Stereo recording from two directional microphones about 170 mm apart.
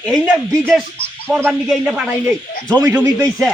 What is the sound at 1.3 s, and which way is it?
Speech, 15° right (ahead or behind).